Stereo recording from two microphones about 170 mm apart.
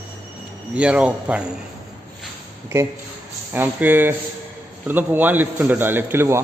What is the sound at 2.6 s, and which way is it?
A man's voice, 15° right (ahead or behind).